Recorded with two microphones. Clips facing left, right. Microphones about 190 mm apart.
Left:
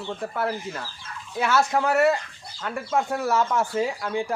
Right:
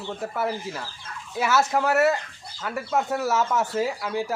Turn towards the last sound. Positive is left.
turn(degrees=-5)  # may be behind; listen again after turning